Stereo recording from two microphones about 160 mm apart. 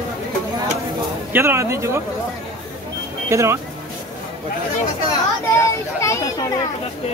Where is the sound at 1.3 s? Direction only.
15° right (ahead or behind).